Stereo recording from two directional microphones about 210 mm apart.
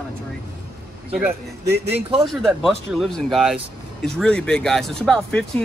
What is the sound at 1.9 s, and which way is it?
Speech, 25° right (ahead or behind).